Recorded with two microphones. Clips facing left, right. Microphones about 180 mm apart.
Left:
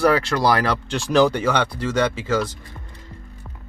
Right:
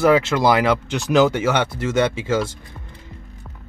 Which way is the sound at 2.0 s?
25° right (ahead or behind).